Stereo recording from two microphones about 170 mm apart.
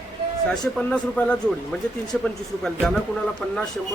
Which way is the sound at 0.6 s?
5° left (ahead or behind).